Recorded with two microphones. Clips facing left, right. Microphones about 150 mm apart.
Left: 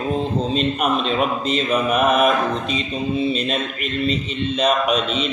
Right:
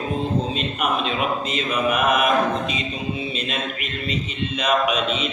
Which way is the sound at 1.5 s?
35° left (ahead or behind).